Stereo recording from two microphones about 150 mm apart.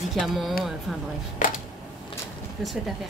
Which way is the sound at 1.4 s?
65° left (ahead or behind).